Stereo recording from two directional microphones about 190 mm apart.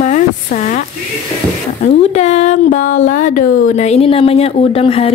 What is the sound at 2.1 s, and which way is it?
Speech, 40° left (ahead or behind).